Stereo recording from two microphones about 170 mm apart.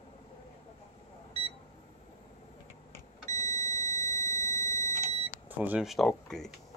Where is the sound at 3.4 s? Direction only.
20° left (ahead or behind).